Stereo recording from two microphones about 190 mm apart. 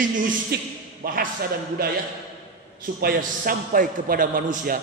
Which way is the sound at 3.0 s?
50° right (ahead or behind).